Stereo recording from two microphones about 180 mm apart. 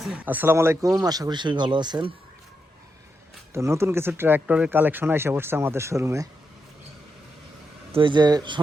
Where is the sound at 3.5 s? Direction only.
15° right (ahead or behind).